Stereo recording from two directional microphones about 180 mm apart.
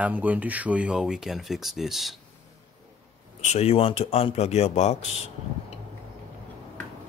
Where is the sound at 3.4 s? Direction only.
40° left (ahead or behind).